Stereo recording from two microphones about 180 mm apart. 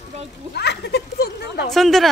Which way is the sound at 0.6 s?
65° left (ahead or behind).